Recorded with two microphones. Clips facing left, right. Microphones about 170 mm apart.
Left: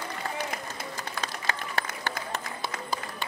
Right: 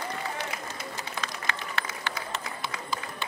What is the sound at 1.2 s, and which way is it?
Applause, 40° left (ahead or behind).